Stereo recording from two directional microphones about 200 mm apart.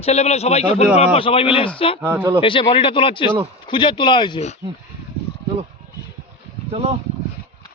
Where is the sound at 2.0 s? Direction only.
10° right (ahead or behind).